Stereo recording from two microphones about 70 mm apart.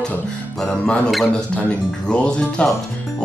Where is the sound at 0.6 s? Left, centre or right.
Centre.